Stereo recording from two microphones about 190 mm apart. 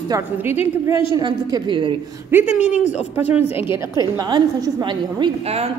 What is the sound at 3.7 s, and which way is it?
Speech, 15° right (ahead or behind).